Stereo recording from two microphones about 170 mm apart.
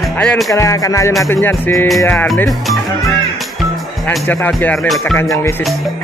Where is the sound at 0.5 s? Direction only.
20° left (ahead or behind).